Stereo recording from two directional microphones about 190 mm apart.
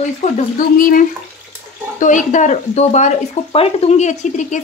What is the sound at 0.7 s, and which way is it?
Speech, 45° left (ahead or behind).